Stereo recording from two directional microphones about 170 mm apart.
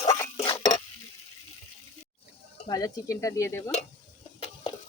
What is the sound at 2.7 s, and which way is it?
Stir, 20° left (ahead or behind).